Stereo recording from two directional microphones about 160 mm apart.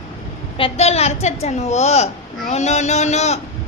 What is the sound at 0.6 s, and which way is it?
A woman's voice, 40° left (ahead or behind).